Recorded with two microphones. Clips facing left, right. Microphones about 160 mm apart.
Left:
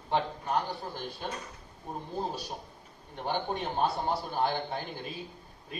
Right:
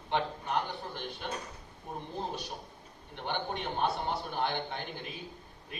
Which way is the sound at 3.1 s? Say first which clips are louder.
Left 3 dB; 35° left (ahead or behind).